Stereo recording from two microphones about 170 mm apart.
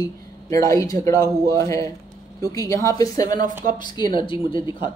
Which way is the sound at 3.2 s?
50° right (ahead or behind).